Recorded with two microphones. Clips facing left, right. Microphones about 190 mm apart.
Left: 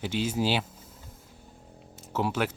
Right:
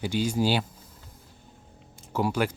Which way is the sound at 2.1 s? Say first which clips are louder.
Right 2 dB; centre (ahead or behind).